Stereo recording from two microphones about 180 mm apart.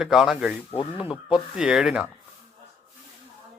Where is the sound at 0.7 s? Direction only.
25° left (ahead or behind).